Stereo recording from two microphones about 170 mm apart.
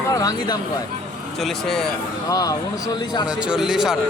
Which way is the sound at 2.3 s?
20° left (ahead or behind).